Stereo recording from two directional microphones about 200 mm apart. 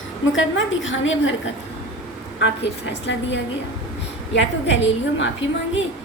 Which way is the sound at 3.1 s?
60° left (ahead or behind).